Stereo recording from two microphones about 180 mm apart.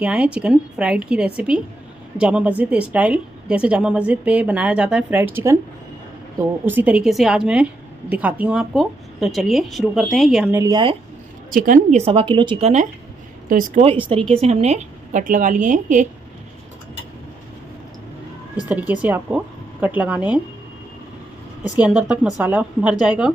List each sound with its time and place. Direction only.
0.0 s a woman's voice: 5° right (ahead or behind)
6.6 s a woman's voice: 10° right (ahead or behind)
10.5 s speech: 20° right (ahead or behind)
11.5 s a woman's voice: 50° right (ahead or behind)
13.5 s a woman's voice: 50° right (ahead or behind)
14.3 s a woman's voice: 35° right (ahead or behind)
18.6 s a woman's voice: 10° right (ahead or behind)
21.7 s a woman's voice: 5° right (ahead or behind)